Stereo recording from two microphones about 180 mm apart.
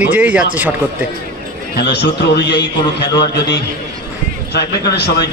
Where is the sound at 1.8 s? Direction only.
70° left (ahead or behind).